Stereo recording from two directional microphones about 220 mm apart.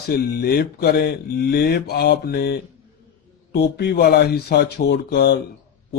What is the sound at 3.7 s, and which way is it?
Speech, 45° left (ahead or behind).